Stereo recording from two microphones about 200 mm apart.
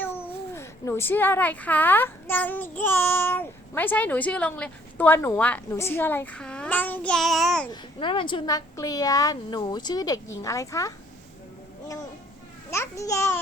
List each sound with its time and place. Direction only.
0.0 s a child's voice: 10° left (ahead or behind)
7.7 s a woman's voice: 25° left (ahead or behind)
12.7 s a child's voice: 15° left (ahead or behind)